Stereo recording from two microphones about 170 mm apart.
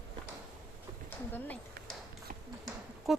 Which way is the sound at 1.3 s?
10° left (ahead or behind).